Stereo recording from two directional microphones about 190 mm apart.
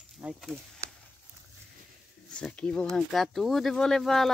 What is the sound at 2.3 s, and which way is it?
Speech, 5° left (ahead or behind).